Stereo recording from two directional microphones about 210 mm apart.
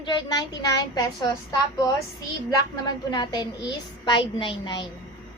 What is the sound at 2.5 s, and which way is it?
A woman's voice, 20° left (ahead or behind).